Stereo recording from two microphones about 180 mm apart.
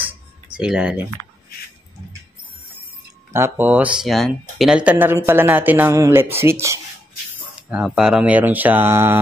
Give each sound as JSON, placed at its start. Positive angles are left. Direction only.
{"t": 0.6, "sound": "speech", "side_deg": -5}
{"t": 3.3, "sound": "speech", "side_deg": -10}
{"t": 7.7, "sound": "speech", "side_deg": -5}